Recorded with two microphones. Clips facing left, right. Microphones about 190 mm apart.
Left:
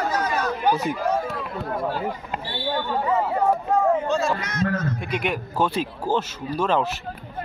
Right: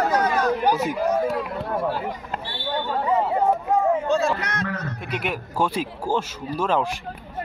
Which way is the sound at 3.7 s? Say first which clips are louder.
Even; 15° right (ahead or behind).